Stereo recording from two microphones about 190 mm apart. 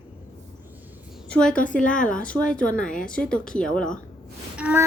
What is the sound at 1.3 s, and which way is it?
Speech, 5° left (ahead or behind).